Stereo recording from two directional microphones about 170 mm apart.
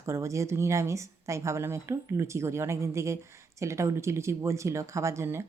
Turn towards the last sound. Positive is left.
turn(degrees=-15)  # may be behind; listen again after turning